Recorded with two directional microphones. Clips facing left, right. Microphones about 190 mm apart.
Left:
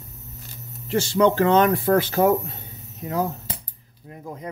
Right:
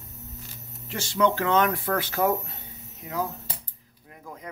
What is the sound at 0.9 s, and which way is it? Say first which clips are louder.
Speech: left 6 dB; 30° left (ahead or behind).